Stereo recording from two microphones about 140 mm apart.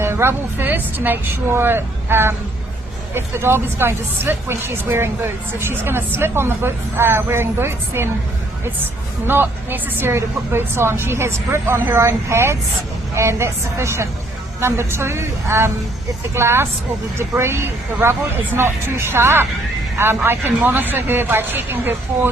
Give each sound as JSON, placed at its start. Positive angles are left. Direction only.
{"t": 0.0, "sound": "a woman's voice", "side_deg": -15}